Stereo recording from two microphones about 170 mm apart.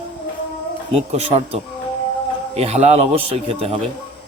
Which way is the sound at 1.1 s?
35° right (ahead or behind).